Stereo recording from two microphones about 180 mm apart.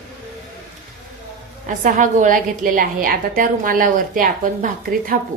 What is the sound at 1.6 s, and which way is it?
A woman's voice, 45° right (ahead or behind).